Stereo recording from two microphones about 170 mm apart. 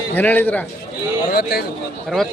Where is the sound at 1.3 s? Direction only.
65° left (ahead or behind).